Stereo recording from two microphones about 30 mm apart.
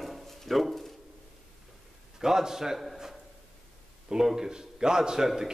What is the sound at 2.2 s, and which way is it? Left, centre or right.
Speech, centre.